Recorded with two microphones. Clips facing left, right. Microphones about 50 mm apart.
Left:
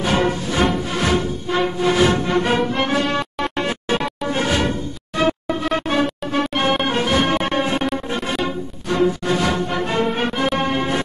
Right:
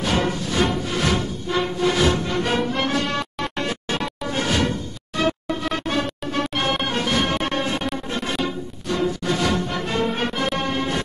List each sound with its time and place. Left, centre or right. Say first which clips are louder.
0.0 s music: left 3 dB; left
1.0 s music: left 5 dB; centre
8.8 s music: left 4 dB; left